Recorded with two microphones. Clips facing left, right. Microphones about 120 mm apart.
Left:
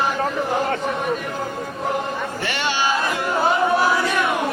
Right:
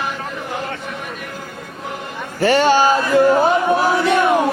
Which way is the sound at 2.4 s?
40° right (ahead or behind).